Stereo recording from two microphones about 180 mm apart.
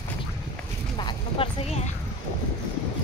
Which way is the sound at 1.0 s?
25° left (ahead or behind).